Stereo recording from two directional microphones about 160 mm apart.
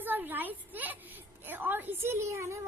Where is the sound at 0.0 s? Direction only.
10° right (ahead or behind).